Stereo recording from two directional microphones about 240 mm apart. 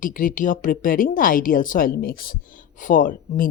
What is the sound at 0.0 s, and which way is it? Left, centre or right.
A woman's voice, left.